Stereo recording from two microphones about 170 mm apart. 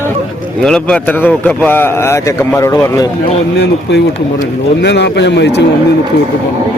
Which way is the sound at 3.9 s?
90° left.